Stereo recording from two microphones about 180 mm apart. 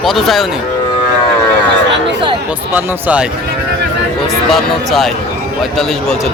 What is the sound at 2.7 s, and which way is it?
Speech, 10° right (ahead or behind).